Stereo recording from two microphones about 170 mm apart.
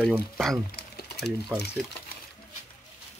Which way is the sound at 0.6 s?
65° left (ahead or behind).